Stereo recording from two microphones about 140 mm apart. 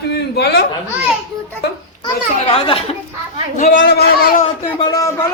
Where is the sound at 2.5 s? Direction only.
45° left (ahead or behind).